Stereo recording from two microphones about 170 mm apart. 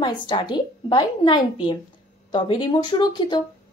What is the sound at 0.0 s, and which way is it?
A woman's voice, 25° left (ahead or behind).